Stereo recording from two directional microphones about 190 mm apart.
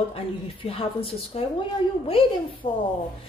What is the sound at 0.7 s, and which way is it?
Speech, 30° left (ahead or behind).